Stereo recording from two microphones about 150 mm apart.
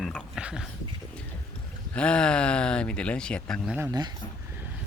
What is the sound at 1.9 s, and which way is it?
Speech, 5° left (ahead or behind).